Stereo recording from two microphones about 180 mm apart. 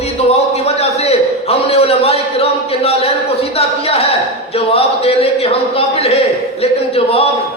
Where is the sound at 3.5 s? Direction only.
35° left (ahead or behind).